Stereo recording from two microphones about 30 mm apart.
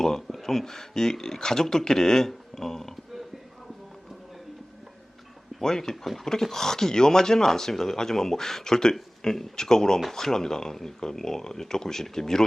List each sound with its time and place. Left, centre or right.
0.0 s a sound: centre
0.4 s speech: centre
5.6 s speech: centre